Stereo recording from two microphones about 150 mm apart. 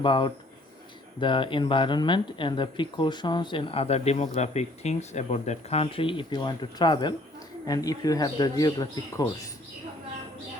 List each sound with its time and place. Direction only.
0.0 s speech: 35° left (ahead or behind)